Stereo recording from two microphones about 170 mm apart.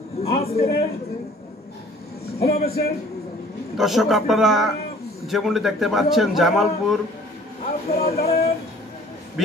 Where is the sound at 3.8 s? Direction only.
Centre (ahead or behind).